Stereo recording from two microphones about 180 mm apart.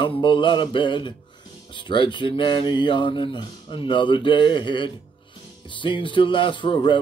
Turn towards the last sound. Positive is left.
turn(degrees=25)  # may be behind; listen again after turning